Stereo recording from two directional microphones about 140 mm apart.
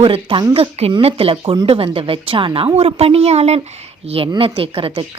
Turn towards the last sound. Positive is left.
turn(degrees=-40)  # may be behind; listen again after turning